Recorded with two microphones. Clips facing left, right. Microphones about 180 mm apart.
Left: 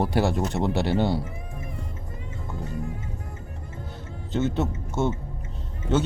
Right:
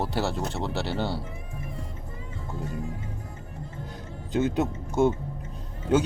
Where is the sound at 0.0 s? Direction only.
15° left (ahead or behind).